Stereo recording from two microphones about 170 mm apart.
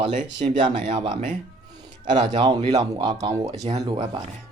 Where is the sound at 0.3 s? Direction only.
45° right (ahead or behind).